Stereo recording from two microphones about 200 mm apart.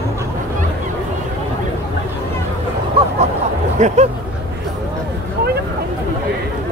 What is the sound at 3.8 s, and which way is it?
Speech, 35° right (ahead or behind).